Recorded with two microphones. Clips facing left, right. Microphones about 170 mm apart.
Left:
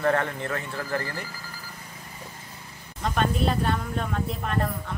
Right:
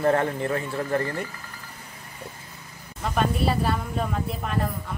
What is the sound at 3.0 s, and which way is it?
Speech, 5° right (ahead or behind).